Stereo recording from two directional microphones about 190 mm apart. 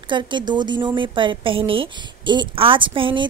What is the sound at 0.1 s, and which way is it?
A woman's voice, 25° right (ahead or behind).